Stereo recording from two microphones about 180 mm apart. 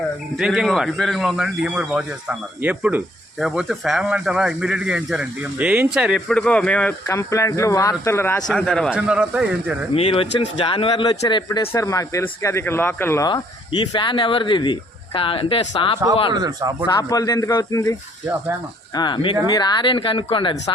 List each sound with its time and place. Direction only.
0.3 s speech: centre (ahead or behind)
9.9 s speech: 30° left (ahead or behind)
16.3 s speech: 20° right (ahead or behind)
16.8 s speech: 20° left (ahead or behind)
18.9 s speech: 25° left (ahead or behind)